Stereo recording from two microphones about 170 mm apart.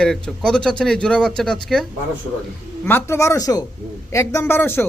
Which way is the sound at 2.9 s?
15° left (ahead or behind).